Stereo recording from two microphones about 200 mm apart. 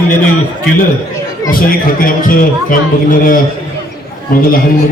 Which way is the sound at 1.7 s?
45° left (ahead or behind).